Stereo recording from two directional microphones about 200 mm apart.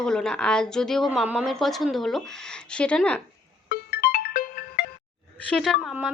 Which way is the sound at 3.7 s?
50° left (ahead or behind).